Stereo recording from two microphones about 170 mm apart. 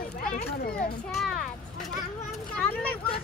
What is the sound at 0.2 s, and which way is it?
Speech, 60° left (ahead or behind).